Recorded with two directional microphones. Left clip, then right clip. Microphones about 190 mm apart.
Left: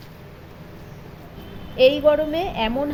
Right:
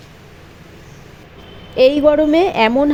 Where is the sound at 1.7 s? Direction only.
50° right (ahead or behind).